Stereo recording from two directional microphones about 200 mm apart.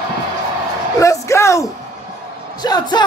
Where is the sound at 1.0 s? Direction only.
15° left (ahead or behind).